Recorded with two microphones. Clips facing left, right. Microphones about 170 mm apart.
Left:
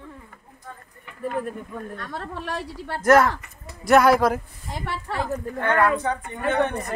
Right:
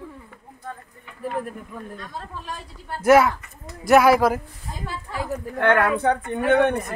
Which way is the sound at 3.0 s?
5° right (ahead or behind).